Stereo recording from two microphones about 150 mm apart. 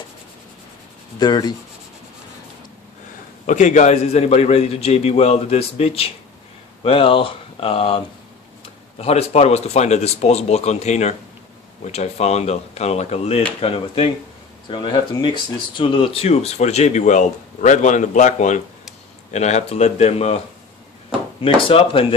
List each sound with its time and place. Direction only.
1.2 s rub: 30° left (ahead or behind)
3.4 s speech: 55° left (ahead or behind)
21.6 s speech: 40° left (ahead or behind)